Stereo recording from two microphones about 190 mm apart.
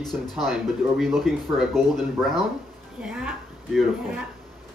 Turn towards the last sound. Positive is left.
turn(degrees=0)  # may be behind; listen again after turning